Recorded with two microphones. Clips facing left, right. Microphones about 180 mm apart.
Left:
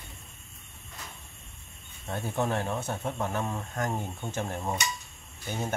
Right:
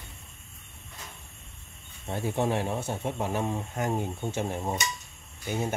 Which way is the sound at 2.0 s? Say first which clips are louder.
Right 2 dB; 20° right (ahead or behind).